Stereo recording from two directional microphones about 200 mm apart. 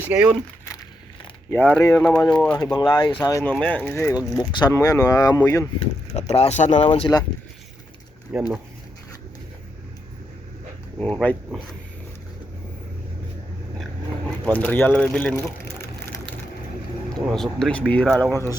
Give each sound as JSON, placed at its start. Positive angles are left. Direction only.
{"t": 0.0, "sound": "speech", "side_deg": -10}
{"t": 1.5, "sound": "speech", "side_deg": 10}
{"t": 2.7, "sound": "speech", "side_deg": 20}
{"t": 6.1, "sound": "speech", "side_deg": 30}
{"t": 8.3, "sound": "speech", "side_deg": -5}
{"t": 11.0, "sound": "speech", "side_deg": 5}
{"t": 14.4, "sound": "a sound", "side_deg": 5}
{"t": 17.2, "sound": "speech", "side_deg": 0}